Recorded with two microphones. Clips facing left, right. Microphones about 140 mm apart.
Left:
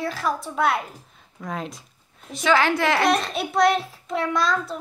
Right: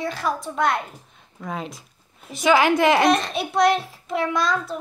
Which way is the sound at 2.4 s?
15° right (ahead or behind).